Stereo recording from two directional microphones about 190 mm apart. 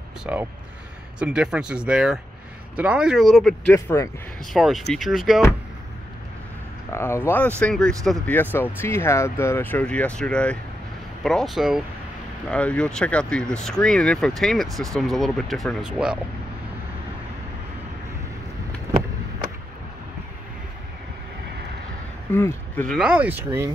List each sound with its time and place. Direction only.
0.3 s speech: 10° right (ahead or behind); by 4.1 s 15° left (ahead or behind)
4.5 s speech: centre (ahead or behind)
6.9 s speech: 15° left (ahead or behind); by 16.2 s 5° right (ahead or behind)
22.3 s speech: 10° left (ahead or behind)
22.9 s speech: 5° right (ahead or behind)